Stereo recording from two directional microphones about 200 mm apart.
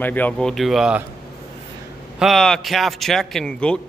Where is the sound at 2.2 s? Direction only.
Centre (ahead or behind).